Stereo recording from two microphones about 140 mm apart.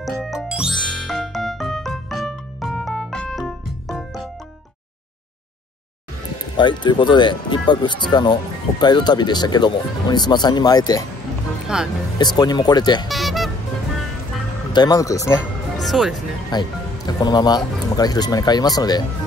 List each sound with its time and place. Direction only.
0.0 s music: centre (ahead or behind)
6.5 s speech: 35° left (ahead or behind)
11.6 s speech: 5° right (ahead or behind)
12.2 s speech: 30° left (ahead or behind)
13.1 s music: centre (ahead or behind)
14.7 s speech: 30° left (ahead or behind)
15.8 s speech: centre (ahead or behind)
16.4 s speech: 30° left (ahead or behind)